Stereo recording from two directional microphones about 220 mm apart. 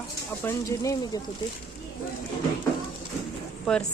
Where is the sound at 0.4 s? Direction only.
15° left (ahead or behind).